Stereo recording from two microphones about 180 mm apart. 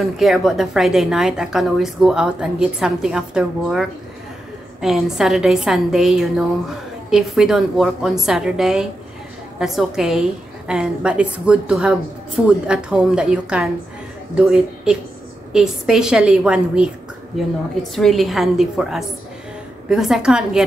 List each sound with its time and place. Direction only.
0.0 s a woman's voice: centre (ahead or behind)
17.9 s a woman's voice: centre (ahead or behind)